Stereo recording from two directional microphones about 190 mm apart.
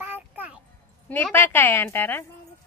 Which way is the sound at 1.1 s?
10° left (ahead or behind).